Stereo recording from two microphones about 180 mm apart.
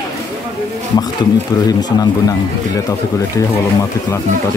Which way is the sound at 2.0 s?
20° left (ahead or behind).